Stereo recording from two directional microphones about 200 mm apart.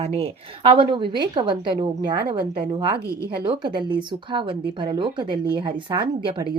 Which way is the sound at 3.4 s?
25° right (ahead or behind).